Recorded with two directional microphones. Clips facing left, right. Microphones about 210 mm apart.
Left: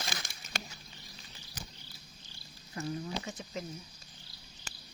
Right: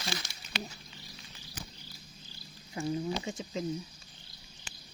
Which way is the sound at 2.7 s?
20° right (ahead or behind).